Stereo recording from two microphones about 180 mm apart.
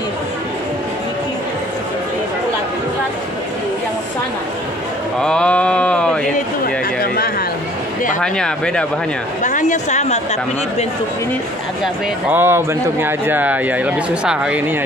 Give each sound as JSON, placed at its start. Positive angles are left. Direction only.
{"t": 5.2, "sound": "sheep", "side_deg": 5}
{"t": 8.2, "sound": "speech", "side_deg": 5}
{"t": 9.4, "sound": "a woman's voice", "side_deg": 45}
{"t": 11.8, "sound": "speech", "side_deg": -10}